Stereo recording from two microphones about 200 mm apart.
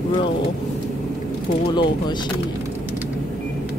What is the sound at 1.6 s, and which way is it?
Speech, 25° left (ahead or behind).